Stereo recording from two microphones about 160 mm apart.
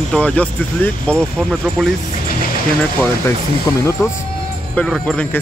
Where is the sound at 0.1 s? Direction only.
5° left (ahead or behind).